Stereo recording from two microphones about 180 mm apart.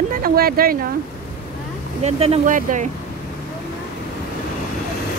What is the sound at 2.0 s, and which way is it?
Speech, 35° right (ahead or behind).